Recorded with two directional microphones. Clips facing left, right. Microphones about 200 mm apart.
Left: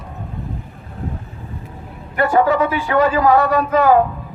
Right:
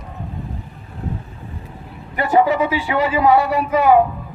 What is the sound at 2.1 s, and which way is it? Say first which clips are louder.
A man's voice: left 1 dB; 15° right (ahead or behind).